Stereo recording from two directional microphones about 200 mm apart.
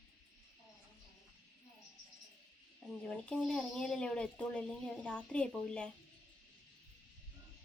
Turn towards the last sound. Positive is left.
turn(degrees=5)  # may be behind; listen again after turning